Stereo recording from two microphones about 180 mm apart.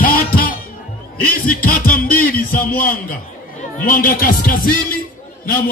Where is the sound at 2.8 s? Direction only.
50° left (ahead or behind).